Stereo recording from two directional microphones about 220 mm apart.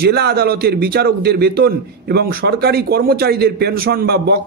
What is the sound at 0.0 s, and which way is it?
A man's voice, 45° right (ahead or behind).